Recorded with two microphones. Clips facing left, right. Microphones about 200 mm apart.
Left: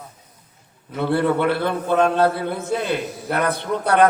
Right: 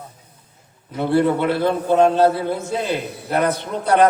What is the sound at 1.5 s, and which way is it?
A man's voice, 60° left (ahead or behind).